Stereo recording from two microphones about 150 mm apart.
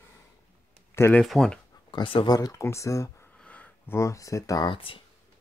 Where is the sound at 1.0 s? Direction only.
15° left (ahead or behind).